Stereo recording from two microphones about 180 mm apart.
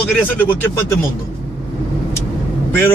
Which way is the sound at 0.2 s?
10° left (ahead or behind).